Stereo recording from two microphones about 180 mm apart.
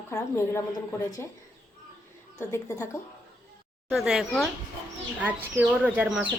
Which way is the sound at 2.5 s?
15° left (ahead or behind).